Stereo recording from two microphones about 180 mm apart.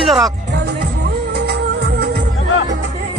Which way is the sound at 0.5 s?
65° right (ahead or behind).